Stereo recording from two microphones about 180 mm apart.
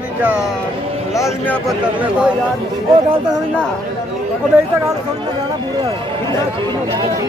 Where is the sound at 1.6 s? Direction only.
5° right (ahead or behind).